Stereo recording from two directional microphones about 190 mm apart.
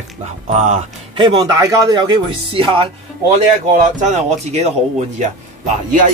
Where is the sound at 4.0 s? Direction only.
35° right (ahead or behind).